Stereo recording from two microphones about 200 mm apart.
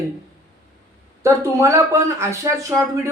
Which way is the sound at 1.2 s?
15° right (ahead or behind).